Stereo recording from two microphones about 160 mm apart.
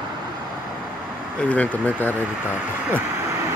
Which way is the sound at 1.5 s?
10° left (ahead or behind).